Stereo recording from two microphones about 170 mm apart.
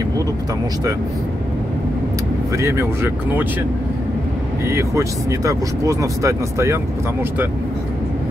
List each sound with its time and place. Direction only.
2.5 s speech: 15° right (ahead or behind)
4.6 s speech: 15° right (ahead or behind)